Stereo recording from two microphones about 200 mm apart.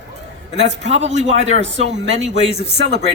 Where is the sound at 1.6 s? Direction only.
65° right (ahead or behind).